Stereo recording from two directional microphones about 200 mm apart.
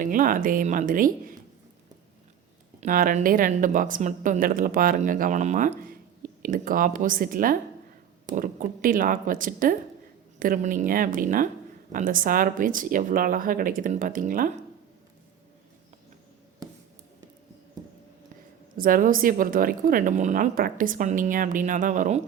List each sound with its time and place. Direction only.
0.0 s a woman's voice: 45° right (ahead or behind)
2.8 s a woman's voice: 40° right (ahead or behind)
17.8 s a sound: 20° right (ahead or behind)
18.8 s a woman's voice: 45° right (ahead or behind)